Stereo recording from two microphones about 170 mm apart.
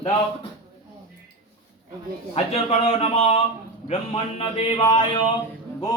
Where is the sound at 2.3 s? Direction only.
35° left (ahead or behind).